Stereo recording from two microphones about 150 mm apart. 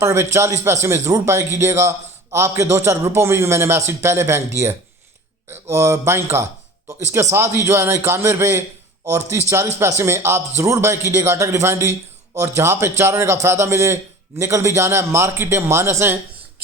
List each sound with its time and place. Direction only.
0.0 s a man's voice: 15° right (ahead or behind)